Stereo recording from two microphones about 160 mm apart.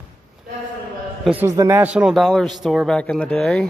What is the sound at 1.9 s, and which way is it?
Speech, centre (ahead or behind).